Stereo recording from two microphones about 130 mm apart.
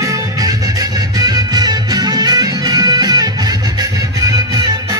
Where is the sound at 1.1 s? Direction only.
30° right (ahead or behind).